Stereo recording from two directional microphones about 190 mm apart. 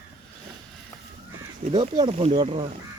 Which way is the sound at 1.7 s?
25° right (ahead or behind).